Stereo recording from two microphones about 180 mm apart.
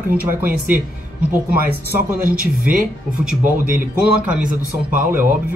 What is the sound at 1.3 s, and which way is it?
Speech, 10° right (ahead or behind).